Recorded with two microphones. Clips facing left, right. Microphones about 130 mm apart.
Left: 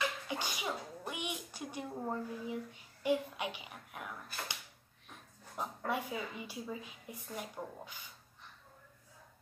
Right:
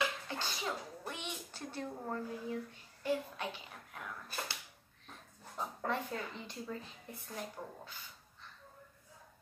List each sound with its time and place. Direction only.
0.3 s sneeze: 15° left (ahead or behind)
5.9 s a woman's voice: 10° left (ahead or behind)